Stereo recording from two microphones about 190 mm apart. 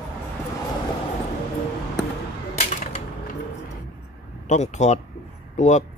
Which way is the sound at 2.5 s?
35° left (ahead or behind).